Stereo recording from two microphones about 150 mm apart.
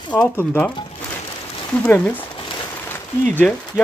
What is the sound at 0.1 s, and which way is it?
Speech, 10° left (ahead or behind).